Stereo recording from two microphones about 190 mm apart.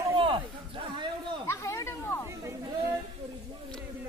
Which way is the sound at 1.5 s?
15° left (ahead or behind).